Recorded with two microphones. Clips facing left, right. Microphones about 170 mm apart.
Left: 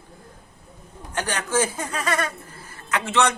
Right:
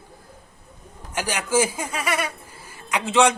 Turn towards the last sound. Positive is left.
turn(degrees=-15)  # may be behind; listen again after turning